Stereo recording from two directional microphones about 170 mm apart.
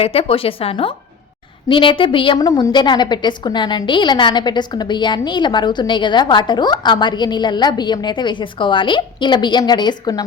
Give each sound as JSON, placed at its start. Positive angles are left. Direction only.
{"t": 0.0, "sound": "a woman's voice", "side_deg": 35}